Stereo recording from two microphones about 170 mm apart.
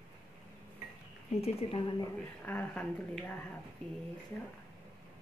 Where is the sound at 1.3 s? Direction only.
35° left (ahead or behind).